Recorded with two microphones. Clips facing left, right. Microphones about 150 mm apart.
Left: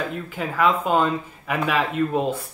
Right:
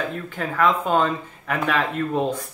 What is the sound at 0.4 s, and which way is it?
Speech, 5° left (ahead or behind).